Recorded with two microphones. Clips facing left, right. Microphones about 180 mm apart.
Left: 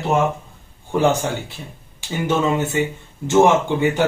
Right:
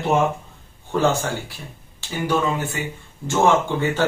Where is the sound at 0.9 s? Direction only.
15° left (ahead or behind).